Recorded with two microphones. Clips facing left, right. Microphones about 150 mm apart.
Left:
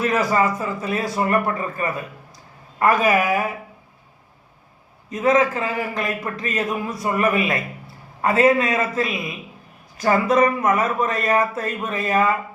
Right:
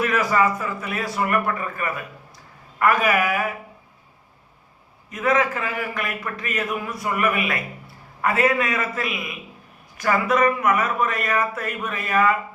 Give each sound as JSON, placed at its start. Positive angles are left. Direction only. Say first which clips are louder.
{"t": 0.3, "sound": "a man's voice", "louder": "left 1 dB", "side_deg": 25}
{"t": 5.1, "sound": "a man's voice", "louder": "left 3 dB", "side_deg": 25}